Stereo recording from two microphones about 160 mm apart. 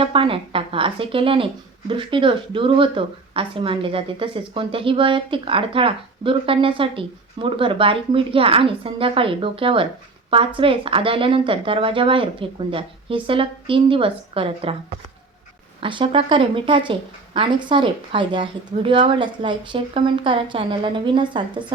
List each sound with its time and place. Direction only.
0.0 s speech: 35° right (ahead or behind)
15.8 s speech: 30° right (ahead or behind)